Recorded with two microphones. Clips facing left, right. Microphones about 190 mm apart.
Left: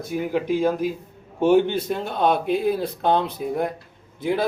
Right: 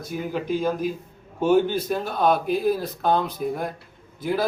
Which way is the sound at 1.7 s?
25° left (ahead or behind).